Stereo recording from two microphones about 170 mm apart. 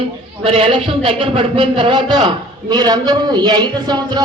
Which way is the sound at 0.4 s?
35° right (ahead or behind).